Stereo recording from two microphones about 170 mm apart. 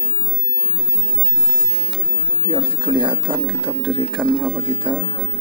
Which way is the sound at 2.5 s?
30° right (ahead or behind).